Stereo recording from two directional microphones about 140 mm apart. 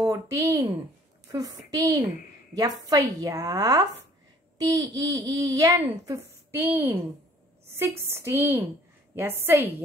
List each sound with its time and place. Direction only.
0.0 s a child's voice: 25° right (ahead or behind)